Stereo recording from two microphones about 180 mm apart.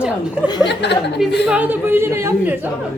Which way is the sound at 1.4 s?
10° right (ahead or behind).